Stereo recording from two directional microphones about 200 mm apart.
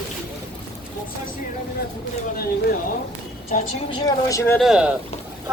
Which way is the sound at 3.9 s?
15° left (ahead or behind).